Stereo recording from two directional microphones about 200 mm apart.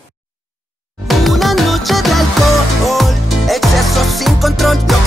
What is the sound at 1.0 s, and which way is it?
Music, centre (ahead or behind).